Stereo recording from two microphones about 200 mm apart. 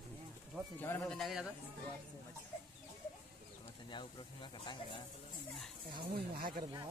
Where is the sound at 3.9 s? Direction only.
25° left (ahead or behind).